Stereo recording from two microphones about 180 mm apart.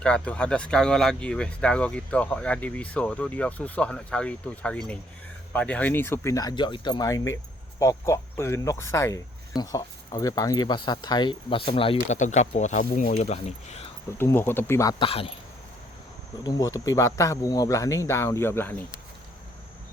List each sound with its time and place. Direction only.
0.0 s speech: 5° left (ahead or behind); by 13.9 s 35° left (ahead or behind)
14.2 s speech: 10° left (ahead or behind); by 15.3 s 30° left (ahead or behind)
16.4 s speech: 20° left (ahead or behind)